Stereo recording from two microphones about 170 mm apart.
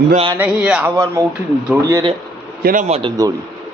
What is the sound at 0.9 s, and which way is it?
A man's voice, 20° right (ahead or behind).